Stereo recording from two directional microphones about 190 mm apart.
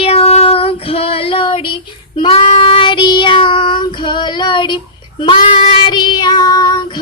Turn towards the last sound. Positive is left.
turn(degrees=20)  # may be behind; listen again after turning